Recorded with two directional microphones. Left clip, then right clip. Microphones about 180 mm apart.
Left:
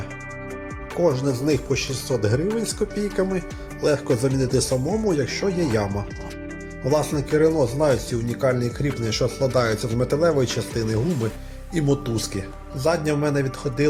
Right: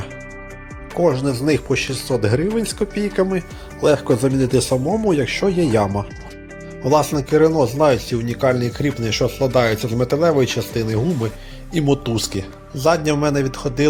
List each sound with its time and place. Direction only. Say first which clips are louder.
0.9 s speech: right 3 dB; 15° right (ahead or behind)
4.7 s speech: right 4 dB; centre (ahead or behind)
5.0 s speech: right 5 dB; 20° right (ahead or behind)
6.9 s speech: right 5 dB; 15° right (ahead or behind)